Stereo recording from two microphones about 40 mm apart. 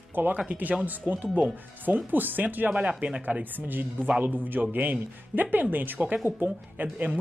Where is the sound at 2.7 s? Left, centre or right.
Right.